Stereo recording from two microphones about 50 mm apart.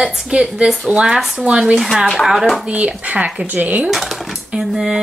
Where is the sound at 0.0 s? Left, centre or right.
Centre.